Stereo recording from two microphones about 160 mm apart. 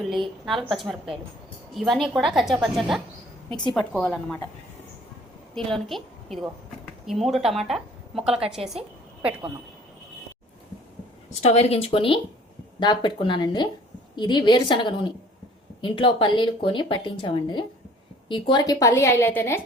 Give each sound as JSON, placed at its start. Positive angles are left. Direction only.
{"t": 0.4, "sound": "a woman's voice", "side_deg": 0}
{"t": 5.5, "sound": "a woman's voice", "side_deg": 0}
{"t": 11.3, "sound": "a woman's voice", "side_deg": 40}